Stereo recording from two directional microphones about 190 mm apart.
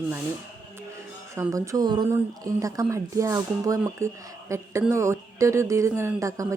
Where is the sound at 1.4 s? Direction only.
15° right (ahead or behind).